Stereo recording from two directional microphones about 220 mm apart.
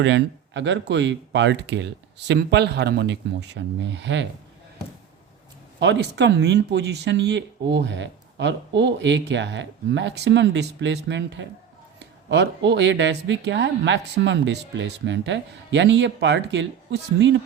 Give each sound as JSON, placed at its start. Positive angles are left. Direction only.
{"t": 0.0, "sound": "speech", "side_deg": -55}
{"t": 5.8, "sound": "speech", "side_deg": -50}